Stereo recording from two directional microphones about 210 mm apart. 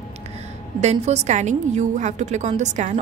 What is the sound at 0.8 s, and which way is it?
A woman's voice, 30° right (ahead or behind).